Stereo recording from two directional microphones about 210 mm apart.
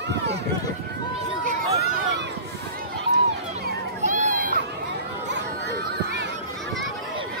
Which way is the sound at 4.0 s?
35° right (ahead or behind).